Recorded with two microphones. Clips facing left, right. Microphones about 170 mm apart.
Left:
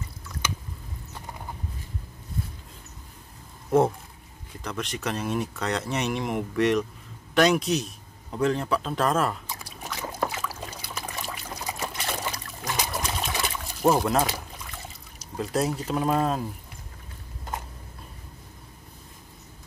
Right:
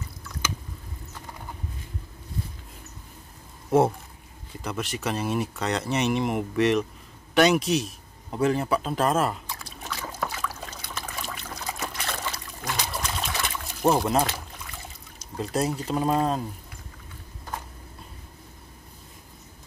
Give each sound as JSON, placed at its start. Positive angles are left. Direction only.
{"t": 4.6, "sound": "speech", "side_deg": -5}
{"t": 9.8, "sound": "trickle", "side_deg": 20}
{"t": 13.6, "sound": "pour", "side_deg": 0}
{"t": 15.3, "sound": "speech", "side_deg": 0}